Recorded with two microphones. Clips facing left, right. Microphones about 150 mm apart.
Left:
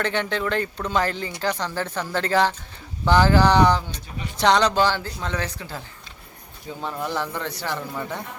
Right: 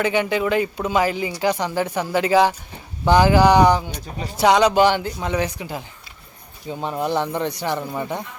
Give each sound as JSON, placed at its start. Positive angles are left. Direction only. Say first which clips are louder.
{"t": 0.0, "sound": "speech", "louder": "right 5 dB", "side_deg": -10}